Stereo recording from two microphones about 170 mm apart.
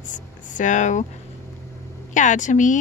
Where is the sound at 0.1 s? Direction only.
50° left (ahead or behind).